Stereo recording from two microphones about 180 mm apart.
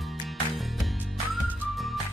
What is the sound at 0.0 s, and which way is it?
Music, centre (ahead or behind).